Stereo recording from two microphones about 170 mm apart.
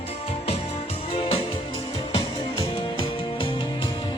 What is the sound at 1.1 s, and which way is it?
Music, 35° left (ahead or behind).